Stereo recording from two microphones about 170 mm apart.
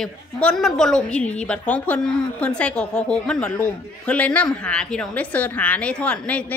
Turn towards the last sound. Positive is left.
turn(degrees=10)  # may be behind; listen again after turning